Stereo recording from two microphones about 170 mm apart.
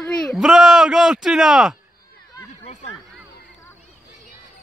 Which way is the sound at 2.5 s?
40° left (ahead or behind).